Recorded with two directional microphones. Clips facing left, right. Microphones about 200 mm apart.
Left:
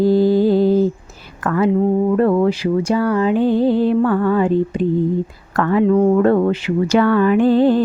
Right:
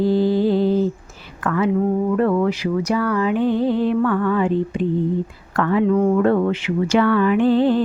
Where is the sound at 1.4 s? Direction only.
40° left (ahead or behind).